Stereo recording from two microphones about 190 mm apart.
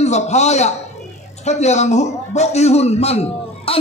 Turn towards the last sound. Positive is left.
turn(degrees=35)  # may be behind; listen again after turning